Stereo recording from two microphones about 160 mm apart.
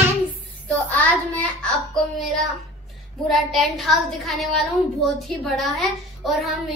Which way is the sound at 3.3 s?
Centre (ahead or behind).